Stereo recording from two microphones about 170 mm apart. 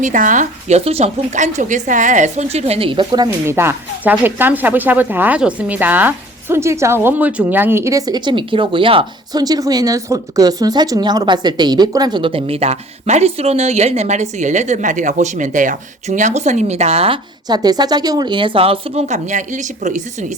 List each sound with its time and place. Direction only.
0.0 s speech: 50° right (ahead or behind)
17.5 s speech: 25° right (ahead or behind); by 20.0 s 45° right (ahead or behind)